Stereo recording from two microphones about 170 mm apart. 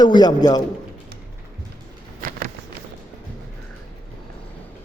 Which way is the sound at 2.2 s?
55° right (ahead or behind).